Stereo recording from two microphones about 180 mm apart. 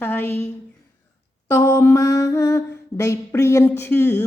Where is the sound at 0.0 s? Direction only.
10° left (ahead or behind).